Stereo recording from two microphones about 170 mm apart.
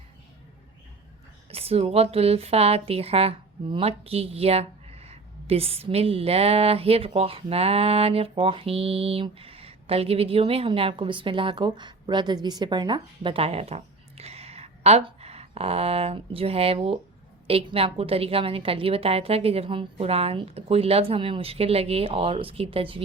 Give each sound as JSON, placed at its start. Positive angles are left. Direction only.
{"t": 1.5, "sound": "a woman's voice", "side_deg": -35}